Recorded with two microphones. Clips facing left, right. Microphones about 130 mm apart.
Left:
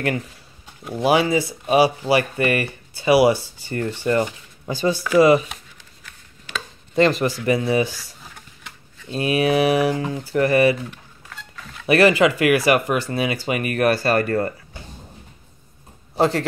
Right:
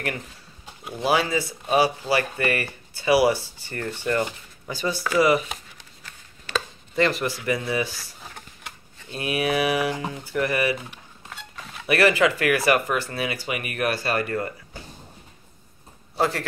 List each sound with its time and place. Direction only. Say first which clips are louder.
1.0 s speech: left 5 dB; 15° left (ahead or behind)
7.0 s speech: left 5 dB; 25° left (ahead or behind)
9.1 s speech: left 6 dB; 30° left (ahead or behind)
10.9 s a sound: left 2 dB; 20° right (ahead or behind)
11.9 s speech: left 4 dB; 20° left (ahead or behind)
13.5 s speech: left 9 dB; 40° left (ahead or behind)
16.2 s speech: left 5 dB; 25° left (ahead or behind)